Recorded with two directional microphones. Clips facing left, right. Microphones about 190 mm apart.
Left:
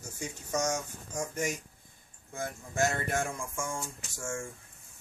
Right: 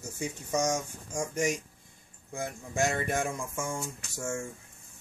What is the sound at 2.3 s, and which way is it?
Speech, 10° right (ahead or behind).